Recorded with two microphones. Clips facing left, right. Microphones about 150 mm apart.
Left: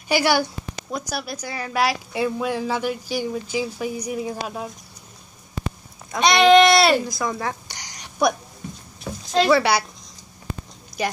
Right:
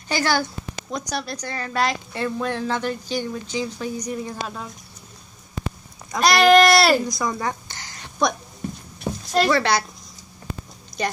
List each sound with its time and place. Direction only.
0.1 s a woman's voice: 10° left (ahead or behind)
6.1 s speech: centre (ahead or behind)
7.6 s a sound: 15° left (ahead or behind)
9.1 s a sound: 30° right (ahead or behind)
9.5 s a woman's voice: 10° left (ahead or behind)
11.0 s a woman's voice: 5° left (ahead or behind)